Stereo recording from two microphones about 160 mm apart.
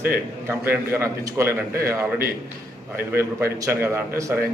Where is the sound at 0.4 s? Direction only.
15° right (ahead or behind).